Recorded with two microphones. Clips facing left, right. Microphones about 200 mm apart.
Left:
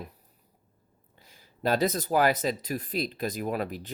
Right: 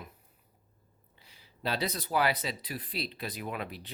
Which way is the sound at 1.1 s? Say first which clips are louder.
Left 4 dB; 45° left (ahead or behind).